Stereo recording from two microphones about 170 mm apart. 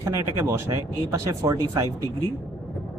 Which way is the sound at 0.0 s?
15° right (ahead or behind).